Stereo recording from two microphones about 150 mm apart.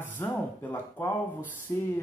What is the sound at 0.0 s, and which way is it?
Speech, 15° left (ahead or behind).